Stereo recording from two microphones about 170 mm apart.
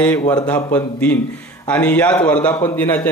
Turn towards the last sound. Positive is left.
turn(degrees=15)  # may be behind; listen again after turning